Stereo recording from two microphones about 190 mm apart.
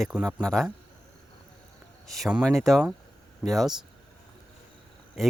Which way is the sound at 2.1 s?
Centre (ahead or behind).